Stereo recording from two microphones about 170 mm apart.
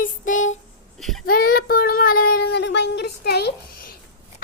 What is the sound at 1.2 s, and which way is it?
Speech, 60° left (ahead or behind).